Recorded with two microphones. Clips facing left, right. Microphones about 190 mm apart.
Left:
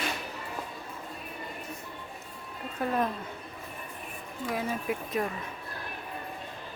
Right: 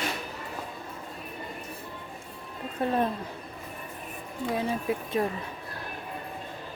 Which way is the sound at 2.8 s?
30° right (ahead or behind).